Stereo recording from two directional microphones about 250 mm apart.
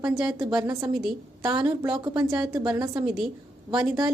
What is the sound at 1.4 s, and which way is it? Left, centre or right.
Speech, centre.